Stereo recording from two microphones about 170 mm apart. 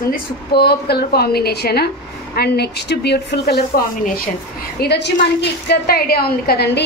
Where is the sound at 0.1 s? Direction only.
70° left (ahead or behind).